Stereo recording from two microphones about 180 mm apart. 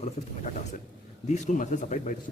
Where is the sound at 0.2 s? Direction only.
40° left (ahead or behind).